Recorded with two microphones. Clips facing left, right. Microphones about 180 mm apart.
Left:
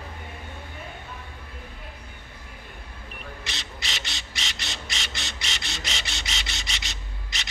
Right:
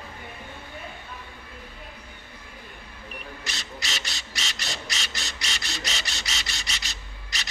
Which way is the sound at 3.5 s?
20° left (ahead or behind).